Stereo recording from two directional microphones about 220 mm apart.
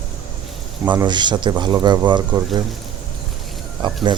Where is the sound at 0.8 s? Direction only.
20° right (ahead or behind).